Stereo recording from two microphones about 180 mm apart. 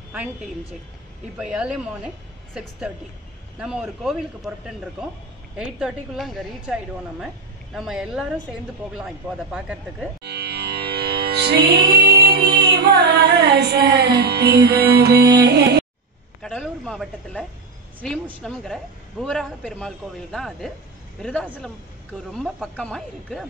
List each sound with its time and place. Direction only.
0.1 s a woman's voice: 5° right (ahead or behind)
3.5 s a woman's voice: 5° right (ahead or behind)
10.2 s music: 65° right (ahead or behind)
16.3 s a sound: centre (ahead or behind)
18.0 s a woman's voice: 5° left (ahead or behind)